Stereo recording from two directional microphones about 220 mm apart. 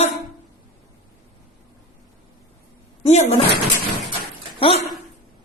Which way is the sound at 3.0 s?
30° left (ahead or behind).